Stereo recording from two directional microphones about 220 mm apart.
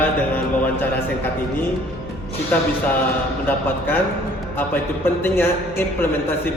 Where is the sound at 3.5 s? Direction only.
10° left (ahead or behind).